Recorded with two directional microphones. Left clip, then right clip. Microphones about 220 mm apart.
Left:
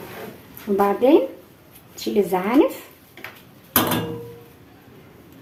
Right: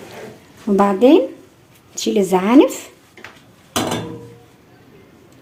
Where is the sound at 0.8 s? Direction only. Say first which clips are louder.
Right 4 dB; 45° right (ahead or behind).